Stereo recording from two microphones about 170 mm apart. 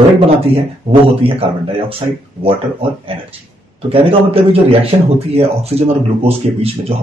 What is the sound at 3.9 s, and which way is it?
Speech, 35° right (ahead or behind).